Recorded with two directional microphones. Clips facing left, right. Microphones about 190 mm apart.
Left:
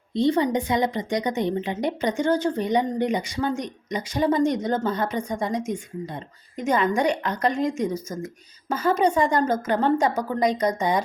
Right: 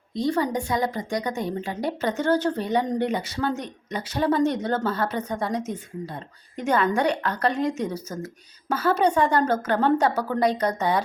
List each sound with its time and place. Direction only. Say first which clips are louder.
0.1 s a woman's voice: left 3 dB; 25° left (ahead or behind)
8.7 s a woman's voice: even; 10° left (ahead or behind)